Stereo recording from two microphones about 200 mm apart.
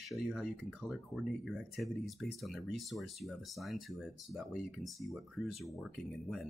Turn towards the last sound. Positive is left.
turn(degrees=0)  # may be behind; listen again after turning